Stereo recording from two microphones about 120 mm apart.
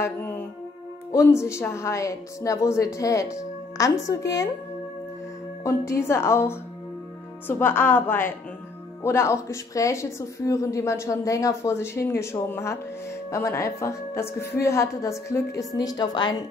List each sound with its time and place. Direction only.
0.0 s music: 20° left (ahead or behind)
1.1 s a woman's voice: 25° left (ahead or behind)
5.6 s a woman's voice: 25° left (ahead or behind)